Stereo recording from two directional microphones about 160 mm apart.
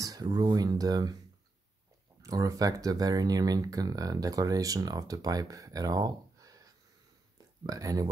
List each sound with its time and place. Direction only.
0.0 s speech: 25° right (ahead or behind)
2.2 s speech: 20° right (ahead or behind)